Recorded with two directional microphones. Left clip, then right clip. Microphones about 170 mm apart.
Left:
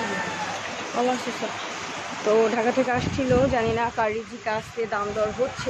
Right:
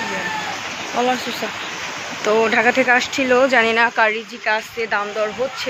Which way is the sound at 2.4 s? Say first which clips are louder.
Right 6 dB; 5° right (ahead or behind).